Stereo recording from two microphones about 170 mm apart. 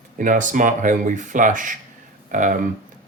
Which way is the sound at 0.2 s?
50° right (ahead or behind).